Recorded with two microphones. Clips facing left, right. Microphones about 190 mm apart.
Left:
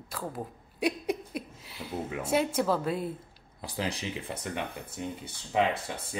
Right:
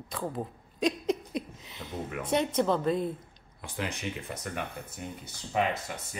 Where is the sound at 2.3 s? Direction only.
5° left (ahead or behind).